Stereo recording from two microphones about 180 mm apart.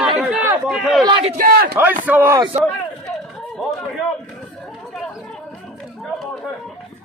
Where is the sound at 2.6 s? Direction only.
Centre (ahead or behind).